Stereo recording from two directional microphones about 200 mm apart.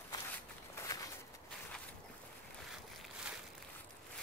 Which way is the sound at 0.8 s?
15° left (ahead or behind).